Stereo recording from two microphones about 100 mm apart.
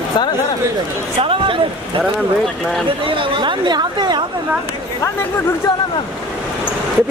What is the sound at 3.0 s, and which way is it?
Chatter, 55° right (ahead or behind).